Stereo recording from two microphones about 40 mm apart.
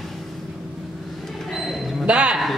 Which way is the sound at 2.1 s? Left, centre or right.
Right.